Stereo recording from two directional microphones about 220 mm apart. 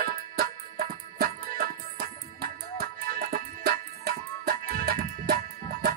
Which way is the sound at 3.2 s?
40° right (ahead or behind).